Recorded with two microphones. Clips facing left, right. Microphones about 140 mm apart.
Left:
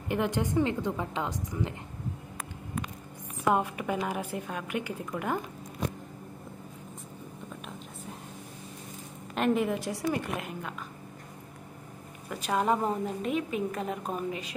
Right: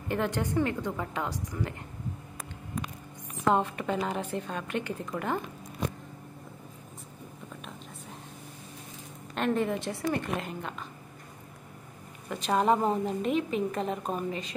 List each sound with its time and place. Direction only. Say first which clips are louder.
0.1 s a woman's voice: left 1 dB; 15° left (ahead or behind)
3.4 s a woman's voice: right 1 dB; 10° left (ahead or behind)
9.3 s a woman's voice: left 1 dB; 5° left (ahead or behind)
12.3 s a woman's voice: right 2 dB; 5° left (ahead or behind)